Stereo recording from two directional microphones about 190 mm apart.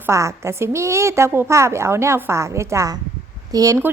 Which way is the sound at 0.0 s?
15° right (ahead or behind).